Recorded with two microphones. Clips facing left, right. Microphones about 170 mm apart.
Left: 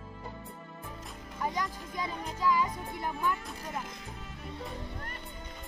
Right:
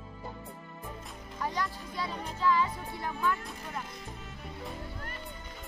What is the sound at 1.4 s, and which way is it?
A child's voice, 15° left (ahead or behind).